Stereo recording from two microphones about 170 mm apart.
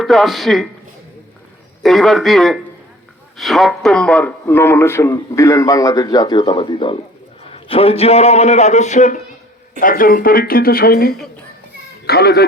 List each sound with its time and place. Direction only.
0.0 s speech: centre (ahead or behind)
1.8 s a man's voice: centre (ahead or behind); by 9.2 s 45° left (ahead or behind)
9.8 s speech: 55° left (ahead or behind)